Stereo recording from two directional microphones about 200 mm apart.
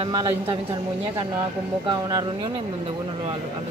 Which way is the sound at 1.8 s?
20° right (ahead or behind).